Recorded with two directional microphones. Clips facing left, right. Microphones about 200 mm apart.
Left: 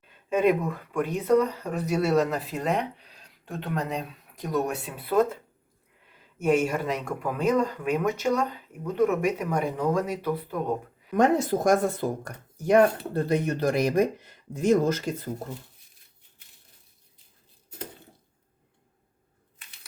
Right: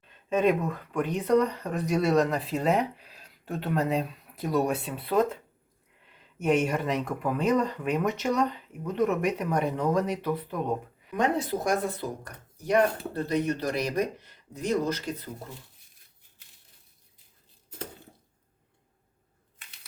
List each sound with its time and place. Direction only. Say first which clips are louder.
0.1 s speech: left 1 dB; 10° left (ahead or behind)
11.1 s speech: left 5 dB; 45° left (ahead or behind)